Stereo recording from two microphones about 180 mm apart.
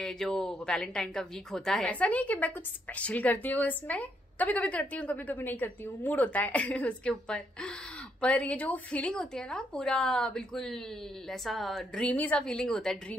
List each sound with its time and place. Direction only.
0.0 s a woman's voice: centre (ahead or behind)